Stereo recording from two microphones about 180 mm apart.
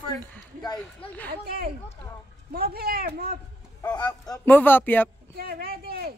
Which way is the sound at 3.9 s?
20° left (ahead or behind).